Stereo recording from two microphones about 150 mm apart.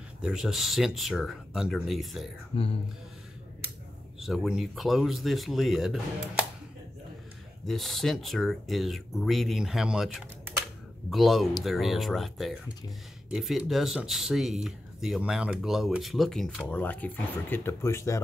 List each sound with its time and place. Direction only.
0.2 s speech: 5° right (ahead or behind)
2.5 s speech: 40° left (ahead or behind)
4.2 s speech: centre (ahead or behind)
7.6 s speech: centre (ahead or behind); by 18.2 s 20° left (ahead or behind)